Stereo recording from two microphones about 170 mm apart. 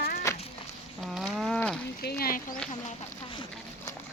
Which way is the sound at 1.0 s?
Centre (ahead or behind).